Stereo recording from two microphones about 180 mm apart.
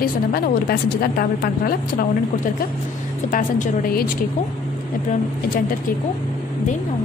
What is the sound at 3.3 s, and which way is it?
Speech, 50° left (ahead or behind).